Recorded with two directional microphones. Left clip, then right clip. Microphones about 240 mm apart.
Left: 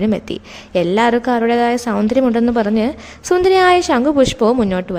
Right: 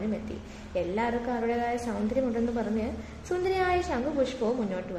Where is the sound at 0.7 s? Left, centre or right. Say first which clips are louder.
Left 15 dB; left.